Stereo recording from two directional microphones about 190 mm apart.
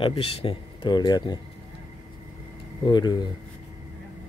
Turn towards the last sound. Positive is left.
turn(degrees=20)  # may be behind; listen again after turning